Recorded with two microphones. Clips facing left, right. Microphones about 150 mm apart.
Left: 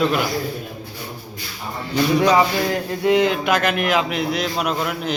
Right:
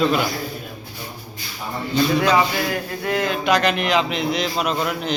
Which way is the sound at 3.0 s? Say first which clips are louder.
Left 7 dB; 20° left (ahead or behind).